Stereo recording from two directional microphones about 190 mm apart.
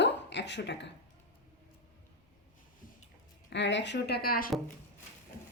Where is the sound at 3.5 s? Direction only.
70° left (ahead or behind); by 4.5 s 50° left (ahead or behind).